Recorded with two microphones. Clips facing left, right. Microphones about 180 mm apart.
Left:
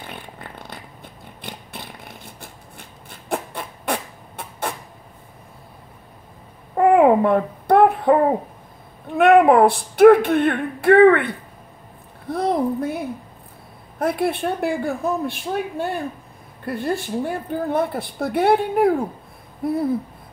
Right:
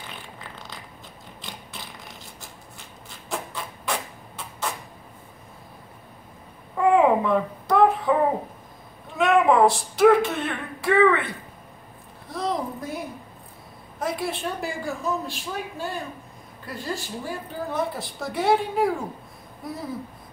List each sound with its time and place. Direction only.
0.0 s zipper: 55° left (ahead or behind)
6.8 s babbling: 55° left (ahead or behind)
9.0 s a woman's voice: 60° left (ahead or behind)